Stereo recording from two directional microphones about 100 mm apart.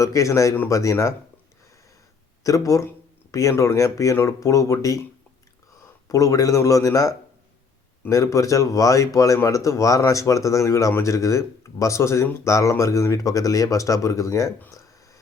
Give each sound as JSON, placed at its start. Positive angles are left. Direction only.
{"t": 0.0, "sound": "speech", "side_deg": 30}
{"t": 2.4, "sound": "speech", "side_deg": 35}
{"t": 6.1, "sound": "speech", "side_deg": 35}
{"t": 8.1, "sound": "speech", "side_deg": 35}
{"t": 14.7, "sound": "a sound", "side_deg": 30}